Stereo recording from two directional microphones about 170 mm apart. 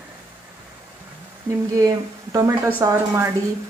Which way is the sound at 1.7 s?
20° right (ahead or behind).